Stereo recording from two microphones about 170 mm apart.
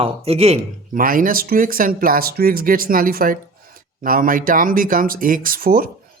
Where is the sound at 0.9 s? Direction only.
55° right (ahead or behind).